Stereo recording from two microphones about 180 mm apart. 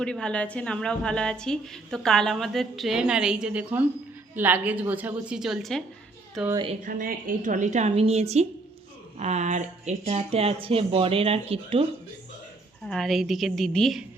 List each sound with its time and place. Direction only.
0.0 s a woman's voice: 5° left (ahead or behind)
6.8 s speech: 50° right (ahead or behind); by 11.9 s 35° right (ahead or behind)
12.8 s a woman's voice: 5° left (ahead or behind)